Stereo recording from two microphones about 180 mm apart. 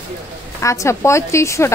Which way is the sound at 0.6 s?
15° left (ahead or behind).